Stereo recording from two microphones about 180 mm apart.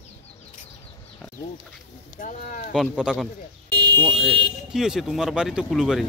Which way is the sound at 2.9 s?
5° right (ahead or behind).